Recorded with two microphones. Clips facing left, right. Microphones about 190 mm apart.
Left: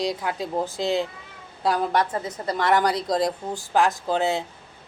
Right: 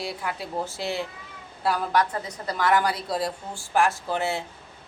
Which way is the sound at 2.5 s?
25° left (ahead or behind).